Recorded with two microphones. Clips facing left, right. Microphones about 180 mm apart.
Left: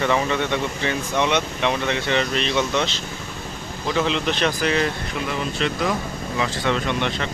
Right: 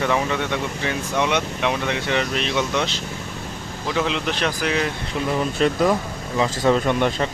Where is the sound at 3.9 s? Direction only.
5° right (ahead or behind).